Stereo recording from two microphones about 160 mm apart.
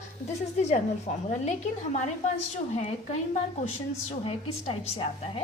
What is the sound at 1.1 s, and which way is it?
Speech, 50° left (ahead or behind).